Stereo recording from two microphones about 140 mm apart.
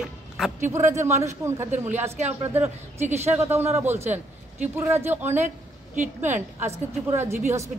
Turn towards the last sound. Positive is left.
turn(degrees=-20)  # may be behind; listen again after turning